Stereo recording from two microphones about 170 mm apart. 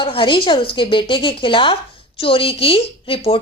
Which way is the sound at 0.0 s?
30° left (ahead or behind).